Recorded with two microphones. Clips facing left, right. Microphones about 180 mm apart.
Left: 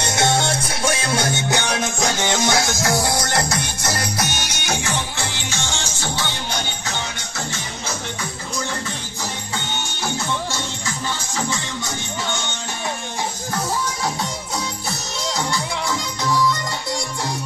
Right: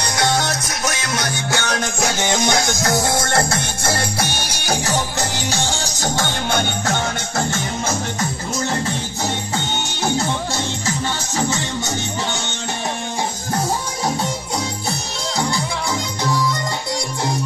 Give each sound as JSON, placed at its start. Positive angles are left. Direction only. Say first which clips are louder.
{"t": 0.0, "sound": "music", "louder": "even", "side_deg": 25}
{"t": 2.1, "sound": "music", "louder": "right 2 dB", "side_deg": -15}
{"t": 3.3, "sound": "music", "louder": "right 3 dB", "side_deg": -50}
{"t": 3.5, "sound": "music", "louder": "right 3 dB", "side_deg": -30}